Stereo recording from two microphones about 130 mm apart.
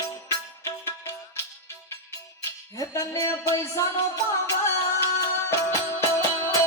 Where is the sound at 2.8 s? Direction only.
25° left (ahead or behind).